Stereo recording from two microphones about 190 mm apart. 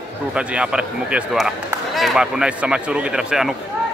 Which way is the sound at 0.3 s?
5° right (ahead or behind).